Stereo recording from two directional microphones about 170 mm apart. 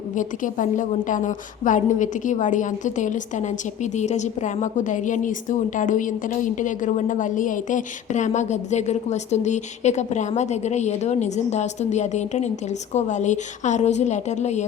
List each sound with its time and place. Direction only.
0.2 s a woman's voice: 50° left (ahead or behind)